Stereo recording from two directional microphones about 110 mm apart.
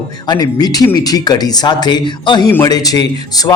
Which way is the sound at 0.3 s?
35° left (ahead or behind).